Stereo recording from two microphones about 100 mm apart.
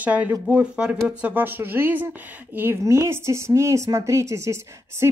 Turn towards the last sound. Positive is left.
turn(degrees=-30)  # may be behind; listen again after turning